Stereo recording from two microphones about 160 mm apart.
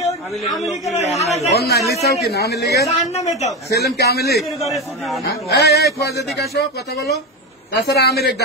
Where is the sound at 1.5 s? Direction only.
90° left.